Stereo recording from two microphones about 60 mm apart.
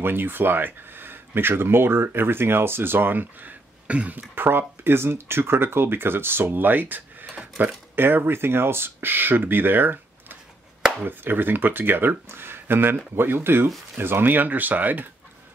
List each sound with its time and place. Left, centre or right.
0.0 s speech: right